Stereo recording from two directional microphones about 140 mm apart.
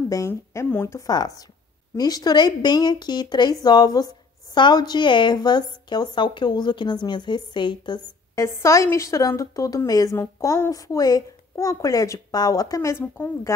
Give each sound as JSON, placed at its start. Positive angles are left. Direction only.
{"t": 0.3, "sound": "a woman's voice", "side_deg": 15}
{"t": 8.4, "sound": "a woman's voice", "side_deg": 20}